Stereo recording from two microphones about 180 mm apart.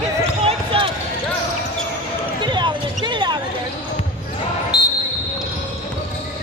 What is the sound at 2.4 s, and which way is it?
Basketball bounce, 25° right (ahead or behind).